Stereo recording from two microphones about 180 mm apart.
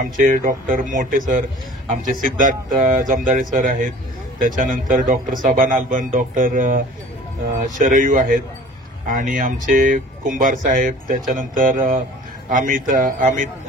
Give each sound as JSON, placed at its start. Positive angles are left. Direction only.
{"t": 0.0, "sound": "speech", "side_deg": -50}